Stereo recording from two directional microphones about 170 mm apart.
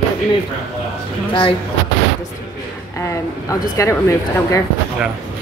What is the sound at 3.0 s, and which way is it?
Speech, 20° left (ahead or behind).